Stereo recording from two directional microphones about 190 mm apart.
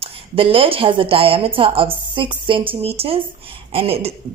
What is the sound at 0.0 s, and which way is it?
A woman's voice, 30° right (ahead or behind).